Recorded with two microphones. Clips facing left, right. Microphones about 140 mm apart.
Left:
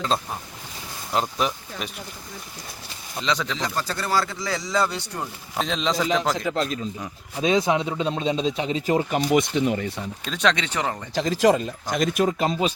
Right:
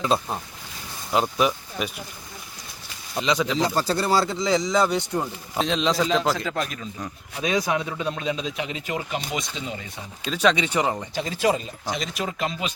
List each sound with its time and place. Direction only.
1.1 s speech: 5° right (ahead or behind)
3.2 s speech: 10° right (ahead or behind)
3.6 s speech: 30° right (ahead or behind); by 5.0 s 15° right (ahead or behind)
5.5 s a man's voice: centre (ahead or behind)
6.3 s speech: 20° left (ahead or behind)
9.0 s speech: 50° left (ahead or behind); by 10.0 s 65° left (ahead or behind)
10.2 s speech: 5° right (ahead or behind)
11.1 s speech: 35° left (ahead or behind)
11.4 s speech: 50° left (ahead or behind)
12.4 s speech: 40° left (ahead or behind)